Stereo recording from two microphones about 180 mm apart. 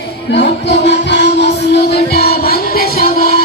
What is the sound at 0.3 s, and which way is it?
Music, 70° left (ahead or behind).